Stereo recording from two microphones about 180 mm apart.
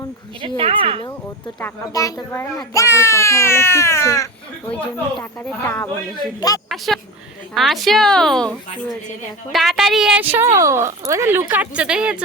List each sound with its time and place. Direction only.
0.4 s speech: 35° right (ahead or behind)
1.6 s a child's voice: 20° left (ahead or behind); by 12.2 s 5° right (ahead or behind)